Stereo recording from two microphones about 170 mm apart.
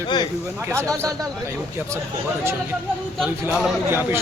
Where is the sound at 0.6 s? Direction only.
15° right (ahead or behind).